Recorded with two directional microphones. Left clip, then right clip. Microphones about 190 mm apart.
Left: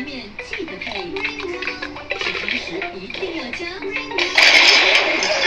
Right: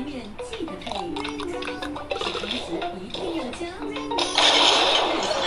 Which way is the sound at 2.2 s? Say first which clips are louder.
Left 8 dB; 35° right (ahead or behind).